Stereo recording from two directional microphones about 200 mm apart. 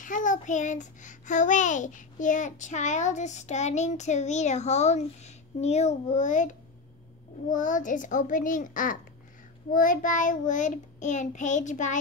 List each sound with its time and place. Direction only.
0.0 s child singing: 40° left (ahead or behind)